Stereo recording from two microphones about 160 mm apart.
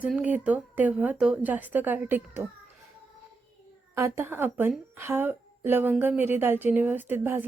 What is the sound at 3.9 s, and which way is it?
A woman's voice, 15° right (ahead or behind).